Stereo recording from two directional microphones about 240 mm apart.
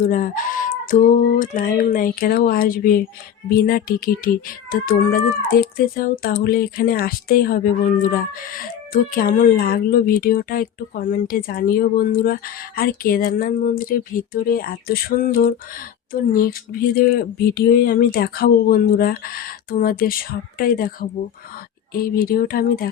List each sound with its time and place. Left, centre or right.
0.0 s speech: left